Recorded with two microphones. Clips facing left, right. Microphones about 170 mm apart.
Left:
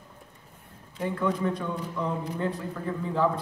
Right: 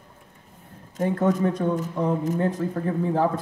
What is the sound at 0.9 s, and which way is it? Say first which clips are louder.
Speech: right 6 dB; 45° right (ahead or behind).